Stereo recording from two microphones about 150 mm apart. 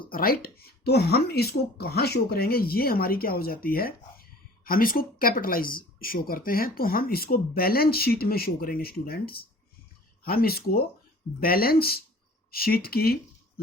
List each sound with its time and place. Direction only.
0.1 s speech: 75° left (ahead or behind)